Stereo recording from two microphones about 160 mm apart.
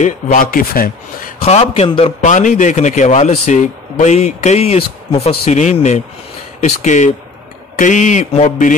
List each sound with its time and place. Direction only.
0.0 s a man's voice: 60° left (ahead or behind)
1.4 s a man's voice: 40° left (ahead or behind)
2.2 s a man's voice: 50° left (ahead or behind)